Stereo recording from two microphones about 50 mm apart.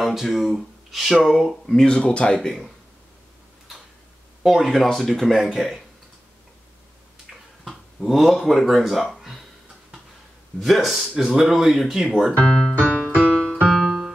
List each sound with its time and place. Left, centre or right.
0.0 s speech: centre
1.8 s speech: centre
4.4 s speech: centre
8.0 s speech: centre
10.6 s speech: centre
12.8 s music: left
13.1 s music: right
13.8 s music: centre